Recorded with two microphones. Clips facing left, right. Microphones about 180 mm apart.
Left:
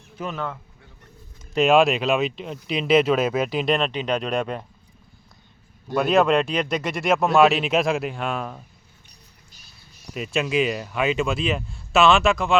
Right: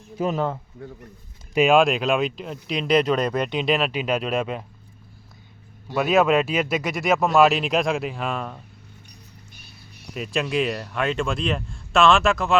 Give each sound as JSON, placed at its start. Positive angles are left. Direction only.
{"t": 0.2, "sound": "speech", "side_deg": -35}
{"t": 1.5, "sound": "speech", "side_deg": 0}
{"t": 5.9, "sound": "speech", "side_deg": 0}
{"t": 10.2, "sound": "speech", "side_deg": 0}